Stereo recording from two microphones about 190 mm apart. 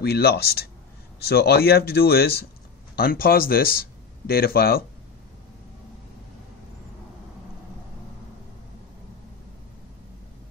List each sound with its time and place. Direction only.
0.0 s speech: 55° left (ahead or behind)